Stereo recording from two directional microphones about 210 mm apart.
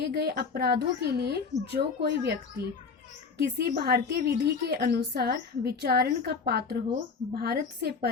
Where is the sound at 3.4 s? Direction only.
50° right (ahead or behind).